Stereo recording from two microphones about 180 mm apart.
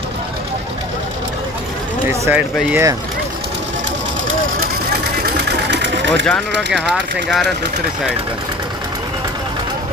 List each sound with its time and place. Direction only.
2.0 s speech: 10° right (ahead or behind)
5.2 s sewing machine: 70° right (ahead or behind)
7.2 s speech: centre (ahead or behind)